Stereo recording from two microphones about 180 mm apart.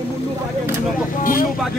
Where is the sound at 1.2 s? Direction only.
50° left (ahead or behind).